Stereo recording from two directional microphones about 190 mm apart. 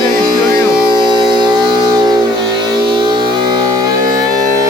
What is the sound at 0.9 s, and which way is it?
Music, 25° right (ahead or behind).